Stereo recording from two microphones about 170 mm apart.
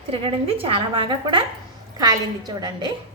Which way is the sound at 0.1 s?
30° right (ahead or behind).